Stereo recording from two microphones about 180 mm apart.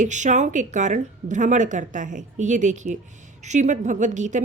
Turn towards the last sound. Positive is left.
turn(degrees=-45)  # may be behind; listen again after turning